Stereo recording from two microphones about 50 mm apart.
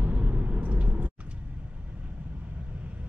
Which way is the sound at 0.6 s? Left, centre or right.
Right.